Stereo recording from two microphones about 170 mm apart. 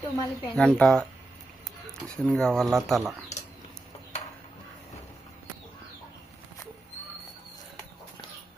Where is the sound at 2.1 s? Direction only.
5° left (ahead or behind).